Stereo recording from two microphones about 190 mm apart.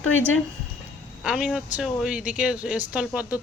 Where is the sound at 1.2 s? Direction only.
5° right (ahead or behind).